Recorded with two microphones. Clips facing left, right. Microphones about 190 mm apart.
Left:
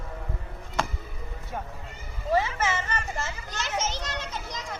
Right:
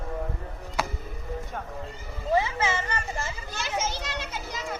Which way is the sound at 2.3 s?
15° right (ahead or behind).